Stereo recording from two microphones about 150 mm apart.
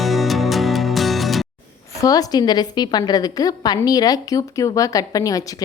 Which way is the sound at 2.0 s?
25° left (ahead or behind).